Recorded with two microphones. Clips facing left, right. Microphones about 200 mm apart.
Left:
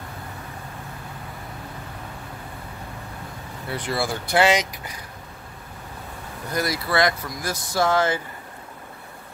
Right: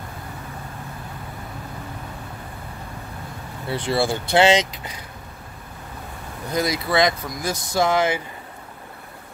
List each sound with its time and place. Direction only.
3.7 s speech: 30° right (ahead or behind)
6.5 s speech: 20° right (ahead or behind)